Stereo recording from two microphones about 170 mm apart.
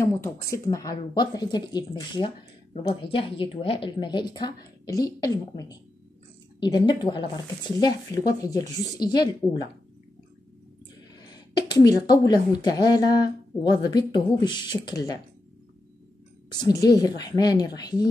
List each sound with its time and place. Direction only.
0.0 s speech: 15° left (ahead or behind)
11.1 s speech: 25° left (ahead or behind)
16.5 s speech: 25° left (ahead or behind)